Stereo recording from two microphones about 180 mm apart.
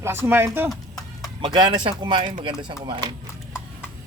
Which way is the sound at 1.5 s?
25° right (ahead or behind).